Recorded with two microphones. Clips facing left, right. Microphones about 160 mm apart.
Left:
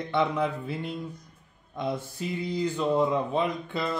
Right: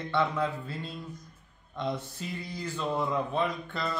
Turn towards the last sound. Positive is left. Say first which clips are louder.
# left 3 dB
turn(degrees=15)  # may be behind; listen again after turning